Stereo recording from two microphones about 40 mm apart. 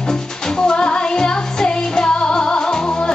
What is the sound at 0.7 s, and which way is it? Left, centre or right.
Music, left.